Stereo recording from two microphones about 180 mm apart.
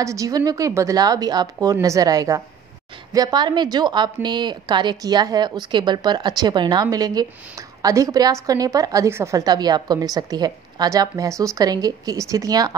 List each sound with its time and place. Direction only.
0.0 s a woman's voice: 15° right (ahead or behind)